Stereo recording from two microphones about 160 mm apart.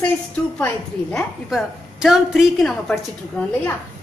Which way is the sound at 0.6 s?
10° left (ahead or behind).